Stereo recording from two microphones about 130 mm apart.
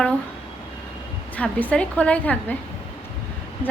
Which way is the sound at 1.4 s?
10° left (ahead or behind).